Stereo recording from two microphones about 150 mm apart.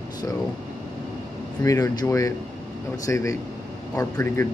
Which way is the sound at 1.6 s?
20° left (ahead or behind).